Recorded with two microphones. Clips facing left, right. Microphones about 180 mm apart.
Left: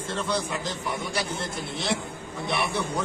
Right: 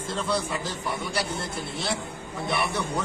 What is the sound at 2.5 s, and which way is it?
Speech, centre (ahead or behind).